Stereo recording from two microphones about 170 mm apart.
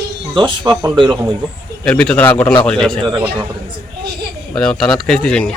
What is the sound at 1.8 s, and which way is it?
Speech, 5° left (ahead or behind).